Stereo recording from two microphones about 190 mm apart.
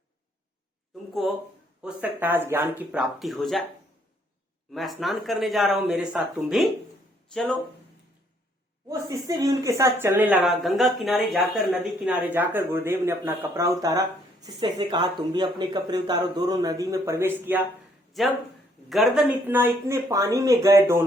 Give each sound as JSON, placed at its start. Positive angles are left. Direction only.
{"t": 1.8, "sound": "speech", "side_deg": -10}
{"t": 4.7, "sound": "speech", "side_deg": 0}
{"t": 8.9, "sound": "speech", "side_deg": -15}
{"t": 18.2, "sound": "speech", "side_deg": 0}